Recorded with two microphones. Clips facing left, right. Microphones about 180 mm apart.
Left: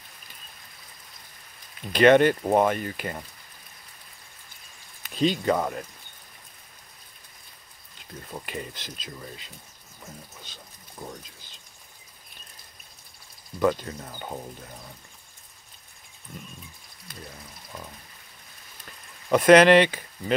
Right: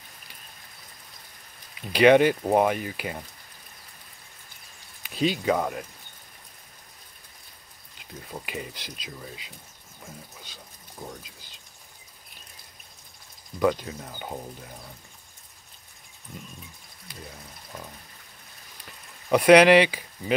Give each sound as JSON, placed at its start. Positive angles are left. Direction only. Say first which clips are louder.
{"t": 1.8, "sound": "speech", "louder": "even", "side_deg": -10}
{"t": 5.0, "sound": "speech", "louder": "left 1 dB", "side_deg": -5}
{"t": 8.2, "sound": "speech", "louder": "even", "side_deg": -5}
{"t": 10.0, "sound": "pour", "louder": "even", "side_deg": -10}
{"t": 13.6, "sound": "speech", "louder": "even", "side_deg": -5}
{"t": 16.3, "sound": "a sound", "louder": "even", "side_deg": -20}
{"t": 19.2, "sound": "speech", "louder": "even", "side_deg": -10}